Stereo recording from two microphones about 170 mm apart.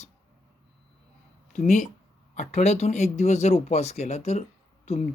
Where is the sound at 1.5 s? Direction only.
45° left (ahead or behind).